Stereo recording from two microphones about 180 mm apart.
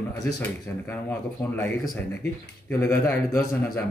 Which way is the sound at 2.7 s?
15° left (ahead or behind).